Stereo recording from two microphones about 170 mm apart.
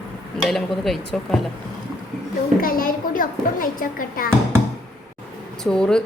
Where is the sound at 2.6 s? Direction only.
55° left (ahead or behind).